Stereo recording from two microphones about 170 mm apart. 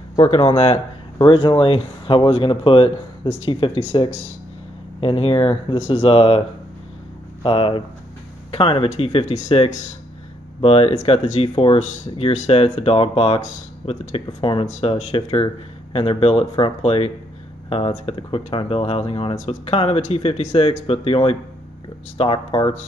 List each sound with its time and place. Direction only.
0.3 s speech: 35° left (ahead or behind)
7.4 s speech: 30° left (ahead or behind)